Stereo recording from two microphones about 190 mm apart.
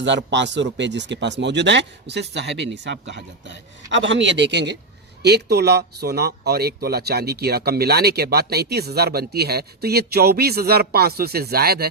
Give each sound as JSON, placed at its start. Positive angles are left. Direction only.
{"t": 0.0, "sound": "speech", "side_deg": -70}